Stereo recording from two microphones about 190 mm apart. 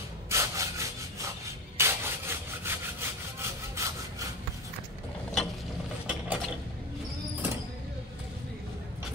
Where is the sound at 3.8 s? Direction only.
15° right (ahead or behind).